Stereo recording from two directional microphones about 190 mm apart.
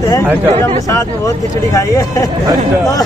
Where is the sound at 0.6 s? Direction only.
15° left (ahead or behind).